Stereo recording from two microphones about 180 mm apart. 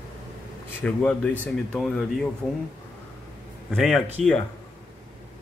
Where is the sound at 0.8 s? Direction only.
5° left (ahead or behind).